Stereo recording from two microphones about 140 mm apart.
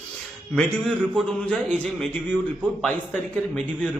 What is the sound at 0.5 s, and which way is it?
A man's voice, 5° left (ahead or behind).